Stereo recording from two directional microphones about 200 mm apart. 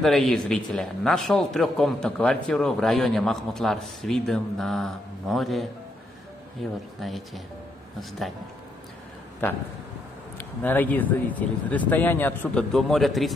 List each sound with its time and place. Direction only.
0.0 s speech: centre (ahead or behind)
9.4 s speech: 10° left (ahead or behind)